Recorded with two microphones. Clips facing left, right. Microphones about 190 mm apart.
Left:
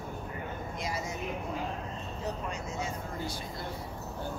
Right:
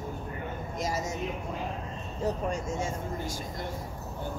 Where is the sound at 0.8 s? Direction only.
45° right (ahead or behind).